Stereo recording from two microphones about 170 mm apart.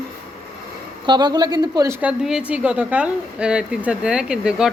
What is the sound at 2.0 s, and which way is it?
A woman's voice, 5° right (ahead or behind).